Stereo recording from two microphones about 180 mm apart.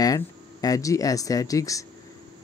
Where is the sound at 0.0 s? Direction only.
20° left (ahead or behind).